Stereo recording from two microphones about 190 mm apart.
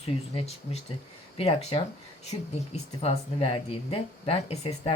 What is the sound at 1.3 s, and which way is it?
Speech, 30° left (ahead or behind).